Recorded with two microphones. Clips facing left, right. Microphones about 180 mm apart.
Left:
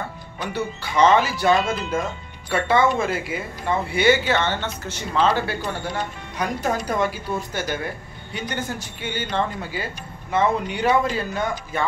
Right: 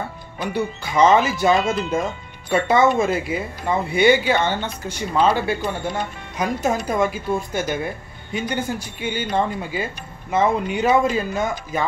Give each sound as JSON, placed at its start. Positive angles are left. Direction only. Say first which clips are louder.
{"t": 0.4, "sound": "a woman's voice", "louder": "right 3 dB", "side_deg": -10}
{"t": 2.5, "sound": "speech", "louder": "right 3 dB", "side_deg": -25}
{"t": 3.9, "sound": "a woman's voice", "louder": "right 3 dB", "side_deg": -15}
{"t": 6.3, "sound": "speech", "louder": "right 3 dB", "side_deg": -25}
{"t": 6.7, "sound": "a woman's voice", "louder": "right 2 dB", "side_deg": -15}